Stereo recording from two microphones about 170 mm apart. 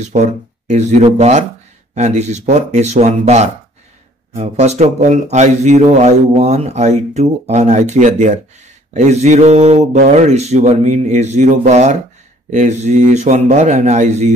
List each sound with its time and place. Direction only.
0.0 s speech: 45° right (ahead or behind)